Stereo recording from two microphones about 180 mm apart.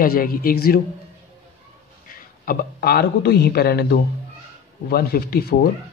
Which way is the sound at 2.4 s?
60° left (ahead or behind).